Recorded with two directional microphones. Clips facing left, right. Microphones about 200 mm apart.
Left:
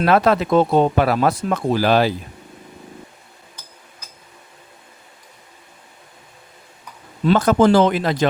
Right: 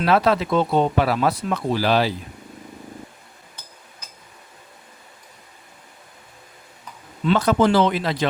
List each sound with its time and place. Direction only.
0.0 s speech: 50° left (ahead or behind)
7.3 s speech: 45° left (ahead or behind)